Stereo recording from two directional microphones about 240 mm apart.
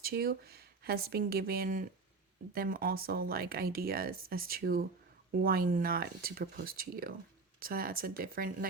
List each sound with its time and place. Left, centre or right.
0.0 s speech: right